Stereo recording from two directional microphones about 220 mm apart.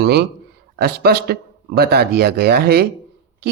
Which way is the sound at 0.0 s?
50° right (ahead or behind).